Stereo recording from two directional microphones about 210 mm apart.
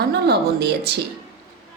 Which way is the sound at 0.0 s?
50° right (ahead or behind).